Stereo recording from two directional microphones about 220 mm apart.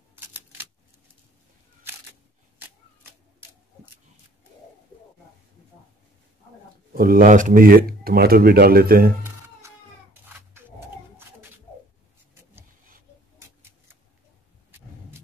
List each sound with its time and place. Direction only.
0.1 s typewriter: 10° right (ahead or behind)
6.9 s speech: 40° right (ahead or behind)